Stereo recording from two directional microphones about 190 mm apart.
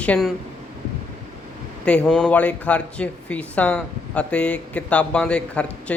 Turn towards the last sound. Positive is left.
turn(degrees=5)  # may be behind; listen again after turning